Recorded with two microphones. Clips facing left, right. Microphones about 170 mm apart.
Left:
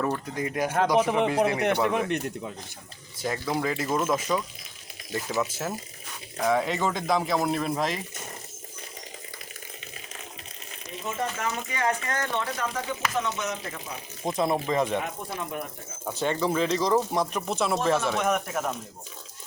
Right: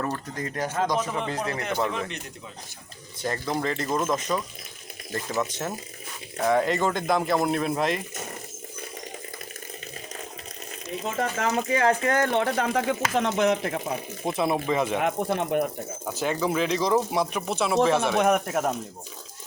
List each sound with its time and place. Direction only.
0.3 s a man's voice: 10° left (ahead or behind)
1.9 s speech: 55° left (ahead or behind)
3.2 s speech: 5° left (ahead or behind)
11.2 s speech: 40° right (ahead or behind)
12.2 s speech: 55° right (ahead or behind)
14.3 s speech: 5° right (ahead or behind)
15.0 s speech: 65° right (ahead or behind)
16.0 s speech: 5° right (ahead or behind)
18.2 s speech: 50° right (ahead or behind)